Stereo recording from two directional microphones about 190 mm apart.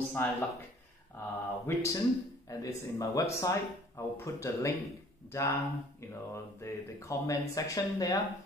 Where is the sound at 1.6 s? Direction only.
15° left (ahead or behind).